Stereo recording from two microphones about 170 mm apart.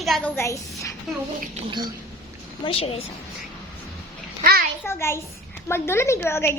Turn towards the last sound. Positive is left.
turn(degrees=15)  # may be behind; listen again after turning